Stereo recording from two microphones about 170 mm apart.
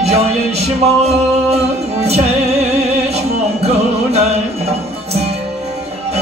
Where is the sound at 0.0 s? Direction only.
40° right (ahead or behind).